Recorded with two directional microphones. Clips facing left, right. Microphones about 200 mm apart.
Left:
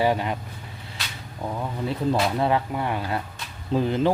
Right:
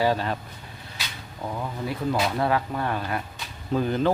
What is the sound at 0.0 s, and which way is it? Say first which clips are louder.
Speech: left 1 dB; 20° left (ahead or behind).